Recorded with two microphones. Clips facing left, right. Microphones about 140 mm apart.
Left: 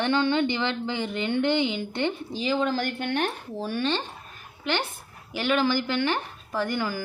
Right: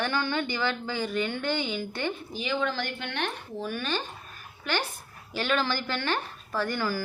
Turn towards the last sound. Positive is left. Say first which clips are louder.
# left 1 dB
turn(degrees=20)  # may be behind; listen again after turning